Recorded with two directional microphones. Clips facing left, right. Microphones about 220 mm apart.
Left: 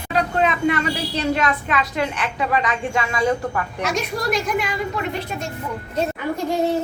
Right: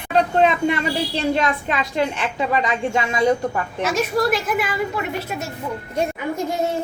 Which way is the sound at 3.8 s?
5° right (ahead or behind).